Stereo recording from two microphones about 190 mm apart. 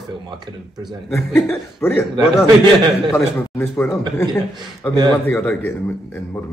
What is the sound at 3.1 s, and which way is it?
A man's voice, 10° left (ahead or behind).